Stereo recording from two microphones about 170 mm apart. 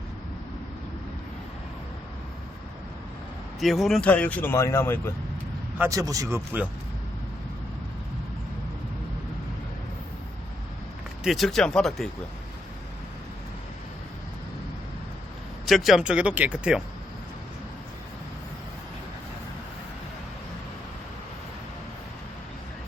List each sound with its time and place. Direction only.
3.6 s speech: centre (ahead or behind)
5.8 s speech: 20° right (ahead or behind)
11.2 s speech: centre (ahead or behind)
15.6 s speech: centre (ahead or behind)